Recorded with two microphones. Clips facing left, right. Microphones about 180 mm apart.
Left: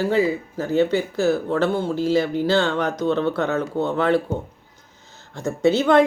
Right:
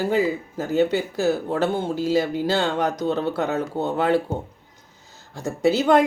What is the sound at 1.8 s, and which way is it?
Speech, 20° right (ahead or behind).